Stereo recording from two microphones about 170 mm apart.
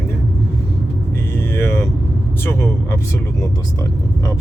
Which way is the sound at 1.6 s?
15° left (ahead or behind).